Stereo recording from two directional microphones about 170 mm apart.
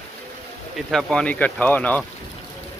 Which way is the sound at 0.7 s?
Centre (ahead or behind).